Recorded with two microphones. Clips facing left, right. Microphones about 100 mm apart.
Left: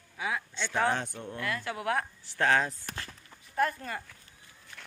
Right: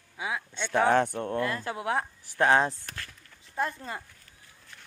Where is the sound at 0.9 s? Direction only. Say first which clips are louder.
Right 9 dB; 60° right (ahead or behind).